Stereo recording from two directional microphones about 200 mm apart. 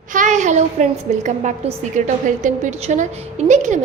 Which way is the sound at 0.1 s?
40° right (ahead or behind).